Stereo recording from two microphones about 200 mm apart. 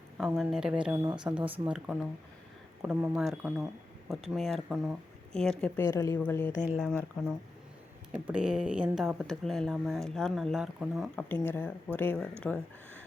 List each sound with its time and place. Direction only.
0.2 s speech: centre (ahead or behind)
1.0 s speech: 25° right (ahead or behind)
1.4 s speech: 5° right (ahead or behind); by 6.5 s 10° left (ahead or behind)
6.7 s speech: 5° right (ahead or behind)
8.1 s speech: 5° right (ahead or behind)